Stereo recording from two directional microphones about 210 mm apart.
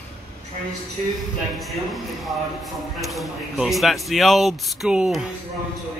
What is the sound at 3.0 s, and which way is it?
Speech, centre (ahead or behind).